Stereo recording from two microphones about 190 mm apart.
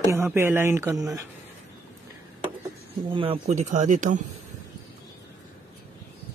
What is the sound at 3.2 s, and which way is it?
Speech, 30° right (ahead or behind).